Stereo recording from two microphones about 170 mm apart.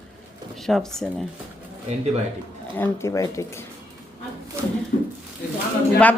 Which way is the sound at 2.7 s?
15° left (ahead or behind).